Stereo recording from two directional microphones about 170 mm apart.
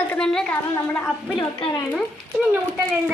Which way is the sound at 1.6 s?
30° left (ahead or behind).